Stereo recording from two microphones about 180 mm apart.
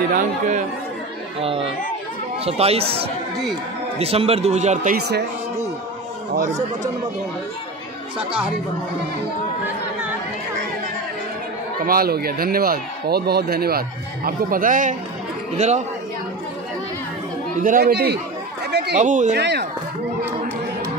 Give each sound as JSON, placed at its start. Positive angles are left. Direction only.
{"t": 0.1, "sound": "speech", "side_deg": -45}
{"t": 1.4, "sound": "a man's voice", "side_deg": -30}
{"t": 11.8, "sound": "a man's voice", "side_deg": -55}
{"t": 17.6, "sound": "speech", "side_deg": -50}
{"t": 18.9, "sound": "speech", "side_deg": -45}
{"t": 19.3, "sound": "speech", "side_deg": -65}